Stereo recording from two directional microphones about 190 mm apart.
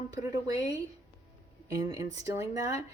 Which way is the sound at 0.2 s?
20° right (ahead or behind).